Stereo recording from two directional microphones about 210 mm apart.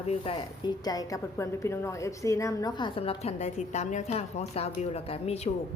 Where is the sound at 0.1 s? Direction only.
25° left (ahead or behind).